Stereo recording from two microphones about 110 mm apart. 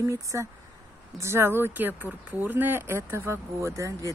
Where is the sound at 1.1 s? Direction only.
25° right (ahead or behind).